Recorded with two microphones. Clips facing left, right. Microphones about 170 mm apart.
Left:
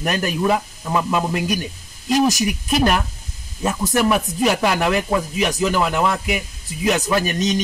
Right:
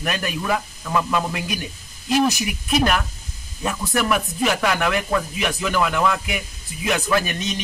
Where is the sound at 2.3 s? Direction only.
40° left (ahead or behind).